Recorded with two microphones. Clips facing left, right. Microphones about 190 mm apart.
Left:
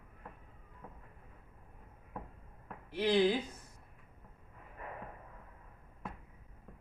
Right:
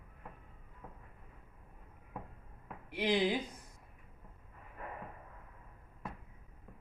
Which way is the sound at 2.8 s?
15° right (ahead or behind).